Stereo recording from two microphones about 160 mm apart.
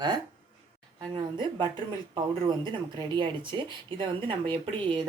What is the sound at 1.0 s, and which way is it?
Speech, 30° right (ahead or behind).